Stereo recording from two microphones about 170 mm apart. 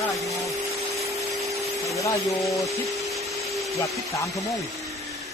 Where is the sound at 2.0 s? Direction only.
20° left (ahead or behind).